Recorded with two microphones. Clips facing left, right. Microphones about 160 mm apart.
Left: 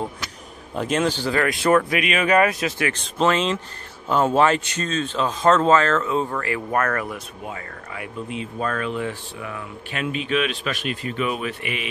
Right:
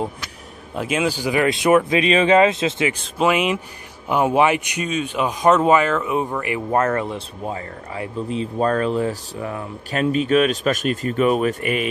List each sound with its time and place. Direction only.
0.7 s speech: 5° right (ahead or behind); by 2.9 s 25° right (ahead or behind)
2.9 s speech: 10° right (ahead or behind); by 11.9 s 45° right (ahead or behind)